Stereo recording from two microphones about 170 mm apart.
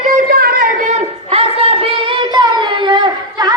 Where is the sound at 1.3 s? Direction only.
35° right (ahead or behind).